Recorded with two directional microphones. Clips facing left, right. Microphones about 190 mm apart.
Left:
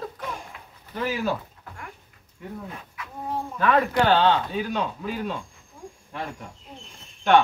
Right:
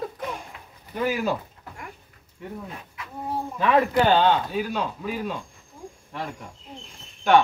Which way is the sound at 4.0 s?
15° right (ahead or behind).